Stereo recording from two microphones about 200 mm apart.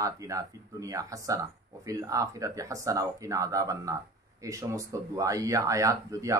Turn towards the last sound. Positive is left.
turn(degrees=-15)  # may be behind; listen again after turning